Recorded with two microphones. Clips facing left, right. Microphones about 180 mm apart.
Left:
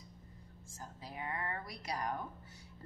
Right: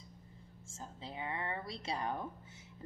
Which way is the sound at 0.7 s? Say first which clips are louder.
Right 2 dB; 25° right (ahead or behind).